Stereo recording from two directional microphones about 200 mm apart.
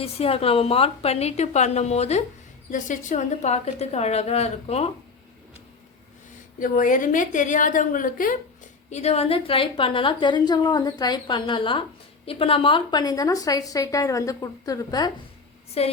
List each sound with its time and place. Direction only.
0.0 s a woman's voice: 30° left (ahead or behind)
6.6 s a woman's voice: 40° left (ahead or behind); by 15.1 s 20° left (ahead or behind)
15.8 s a woman's voice: 30° left (ahead or behind)